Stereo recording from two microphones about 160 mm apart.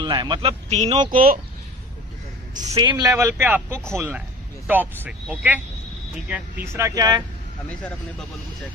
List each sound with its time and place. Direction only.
0.0 s a man's voice: 25° right (ahead or behind); by 0.9 s 45° right (ahead or behind)
1.1 s speech: 65° right (ahead or behind)
2.7 s speech: 25° right (ahead or behind)